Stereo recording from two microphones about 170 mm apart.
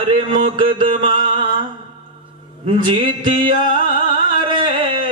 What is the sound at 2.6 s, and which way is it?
Speech, 30° right (ahead or behind).